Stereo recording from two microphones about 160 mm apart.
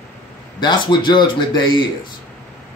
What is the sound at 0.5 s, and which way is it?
Speech, 30° left (ahead or behind).